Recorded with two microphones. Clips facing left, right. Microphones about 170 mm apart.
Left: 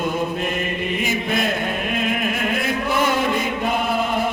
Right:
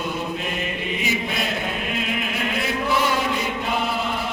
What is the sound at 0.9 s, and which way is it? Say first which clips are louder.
Chant: left 3 dB; 50° left (ahead or behind).